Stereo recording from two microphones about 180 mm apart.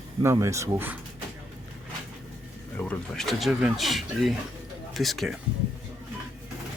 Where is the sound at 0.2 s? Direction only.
15° right (ahead or behind).